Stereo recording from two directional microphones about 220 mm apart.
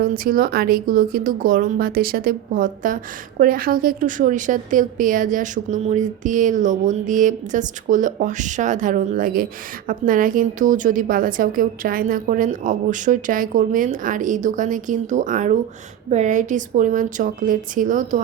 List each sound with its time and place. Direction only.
0.0 s speech: 40° right (ahead or behind)